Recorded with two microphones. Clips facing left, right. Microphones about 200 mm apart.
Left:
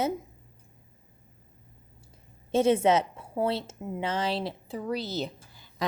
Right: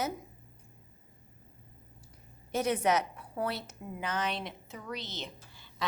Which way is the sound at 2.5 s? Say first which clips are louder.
Left 7 dB; 25° left (ahead or behind).